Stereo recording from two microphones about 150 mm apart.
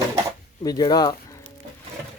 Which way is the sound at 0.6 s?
25° left (ahead or behind).